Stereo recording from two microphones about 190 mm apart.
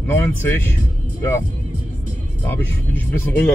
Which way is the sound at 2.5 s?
10° left (ahead or behind).